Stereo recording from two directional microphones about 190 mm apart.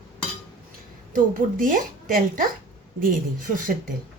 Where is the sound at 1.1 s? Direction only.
45° right (ahead or behind).